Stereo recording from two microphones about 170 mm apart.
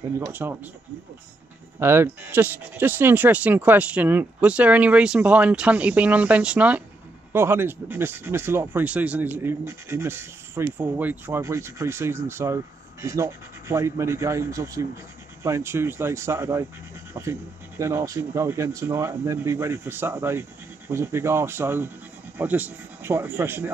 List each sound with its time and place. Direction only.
0.2 s speech: 10° right (ahead or behind)
1.8 s speech: 15° right (ahead or behind)